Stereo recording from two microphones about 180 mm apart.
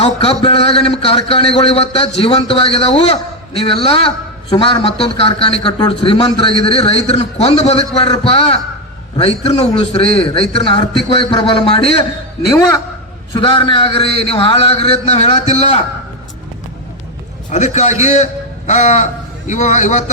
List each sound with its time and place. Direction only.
0.0 s a man's voice: 35° left (ahead or behind)
13.3 s a man's voice: 25° left (ahead or behind)
17.5 s a man's voice: 40° left (ahead or behind)